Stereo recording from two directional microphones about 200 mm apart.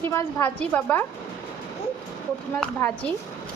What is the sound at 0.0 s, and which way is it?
A woman's voice, 15° left (ahead or behind).